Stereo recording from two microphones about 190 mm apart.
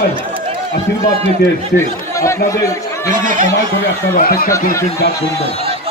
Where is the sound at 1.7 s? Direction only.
15° left (ahead or behind).